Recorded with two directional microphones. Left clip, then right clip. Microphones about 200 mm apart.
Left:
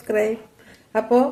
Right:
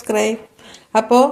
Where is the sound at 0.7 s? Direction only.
35° right (ahead or behind).